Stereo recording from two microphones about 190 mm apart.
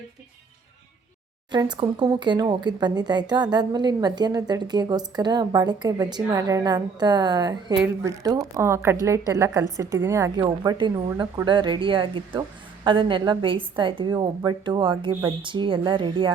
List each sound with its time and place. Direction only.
1.5 s a woman's voice: 20° right (ahead or behind)